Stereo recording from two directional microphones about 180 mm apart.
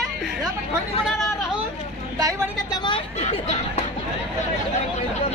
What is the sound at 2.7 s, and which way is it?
Speech, 25° left (ahead or behind).